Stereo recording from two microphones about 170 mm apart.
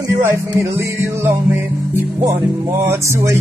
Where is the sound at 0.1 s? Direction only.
15° right (ahead or behind).